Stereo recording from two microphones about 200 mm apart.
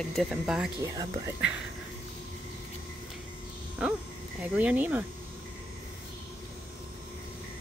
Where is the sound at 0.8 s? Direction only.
20° right (ahead or behind).